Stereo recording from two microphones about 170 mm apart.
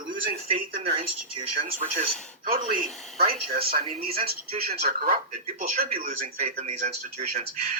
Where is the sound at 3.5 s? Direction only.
60° right (ahead or behind).